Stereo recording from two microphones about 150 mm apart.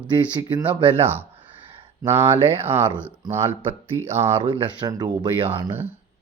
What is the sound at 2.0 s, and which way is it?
Speech, 15° right (ahead or behind).